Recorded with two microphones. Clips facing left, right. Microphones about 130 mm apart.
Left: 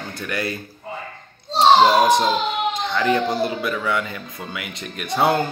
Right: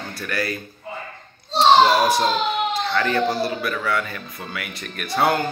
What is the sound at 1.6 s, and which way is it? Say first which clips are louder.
Speech: left 1 dB; 20° left (ahead or behind).